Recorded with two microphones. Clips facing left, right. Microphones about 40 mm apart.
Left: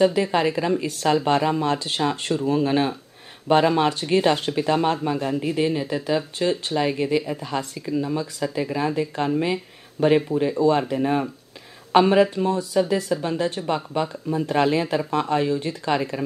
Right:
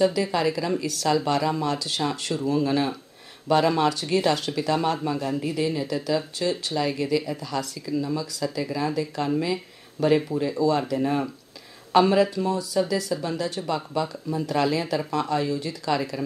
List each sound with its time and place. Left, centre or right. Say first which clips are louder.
0.0 s speech: left 3 dB; left